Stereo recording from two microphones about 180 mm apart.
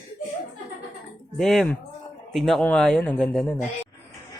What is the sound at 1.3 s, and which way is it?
Speech, centre (ahead or behind).